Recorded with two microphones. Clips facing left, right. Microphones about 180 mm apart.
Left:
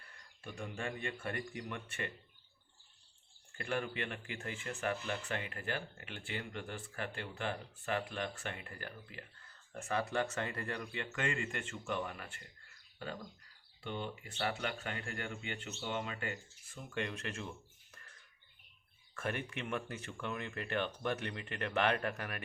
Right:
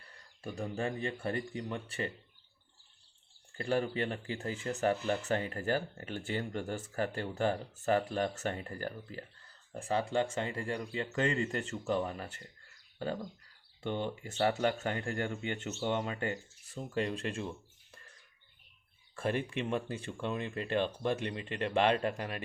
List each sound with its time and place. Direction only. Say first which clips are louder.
0.0 s speech: right 7 dB; 35° right (ahead or behind)
3.6 s speech: right 6 dB; 35° right (ahead or behind)
13.8 s speech: right 6 dB; 45° right (ahead or behind); by 17.5 s 30° right (ahead or behind)
19.1 s speech: right 6 dB; 30° right (ahead or behind)